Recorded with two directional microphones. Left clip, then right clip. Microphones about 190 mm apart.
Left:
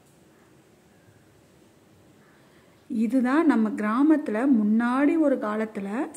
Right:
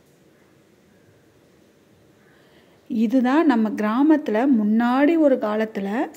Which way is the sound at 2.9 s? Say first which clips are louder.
Right 4 dB; 10° right (ahead or behind).